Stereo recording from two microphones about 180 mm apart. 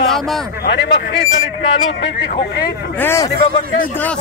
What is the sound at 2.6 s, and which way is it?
Speech, 15° left (ahead or behind).